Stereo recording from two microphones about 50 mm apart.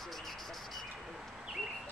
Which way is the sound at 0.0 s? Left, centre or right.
Centre.